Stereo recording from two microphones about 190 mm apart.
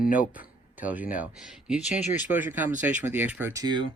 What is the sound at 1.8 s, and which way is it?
Speech, 35° left (ahead or behind).